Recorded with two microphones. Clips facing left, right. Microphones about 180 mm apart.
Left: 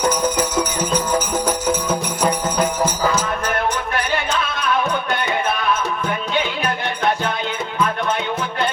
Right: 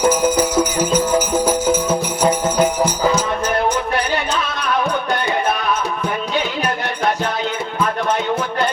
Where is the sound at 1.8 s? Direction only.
25° right (ahead or behind).